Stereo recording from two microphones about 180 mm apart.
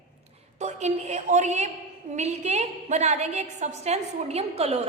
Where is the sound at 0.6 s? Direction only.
40° right (ahead or behind).